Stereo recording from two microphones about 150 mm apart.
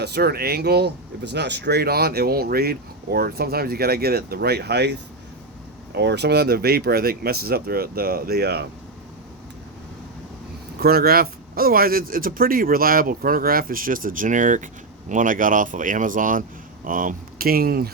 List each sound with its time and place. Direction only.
0.0 s speech: 90° right
5.9 s speech: 90° right
10.8 s speech: 90° right